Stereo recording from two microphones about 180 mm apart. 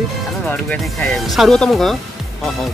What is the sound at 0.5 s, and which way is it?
Speech, 5° left (ahead or behind).